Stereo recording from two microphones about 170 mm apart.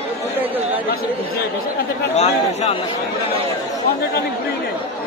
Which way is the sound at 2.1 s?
40° left (ahead or behind).